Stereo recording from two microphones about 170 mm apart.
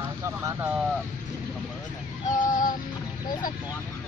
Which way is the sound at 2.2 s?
50° left (ahead or behind).